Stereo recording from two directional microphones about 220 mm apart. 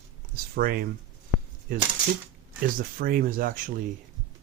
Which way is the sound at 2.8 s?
40° right (ahead or behind).